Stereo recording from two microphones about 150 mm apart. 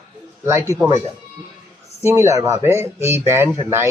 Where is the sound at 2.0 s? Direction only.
20° right (ahead or behind).